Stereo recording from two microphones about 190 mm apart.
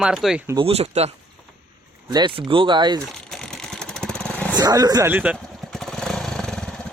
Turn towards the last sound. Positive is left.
turn(degrees=5)  # may be behind; listen again after turning